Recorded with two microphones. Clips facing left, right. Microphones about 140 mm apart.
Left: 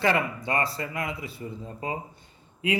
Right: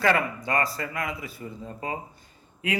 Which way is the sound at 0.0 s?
25° left (ahead or behind).